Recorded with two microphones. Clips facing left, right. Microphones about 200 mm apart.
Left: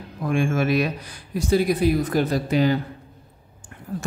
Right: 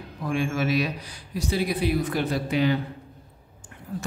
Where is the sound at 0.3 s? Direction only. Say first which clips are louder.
Left 4 dB; 50° left (ahead or behind).